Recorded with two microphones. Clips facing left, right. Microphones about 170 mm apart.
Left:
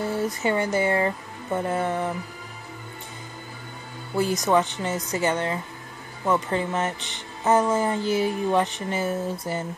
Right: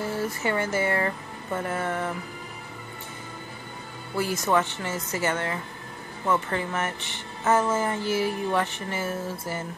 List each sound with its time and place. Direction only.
0.2 s speech: 20° left (ahead or behind)
4.2 s speech: 15° left (ahead or behind)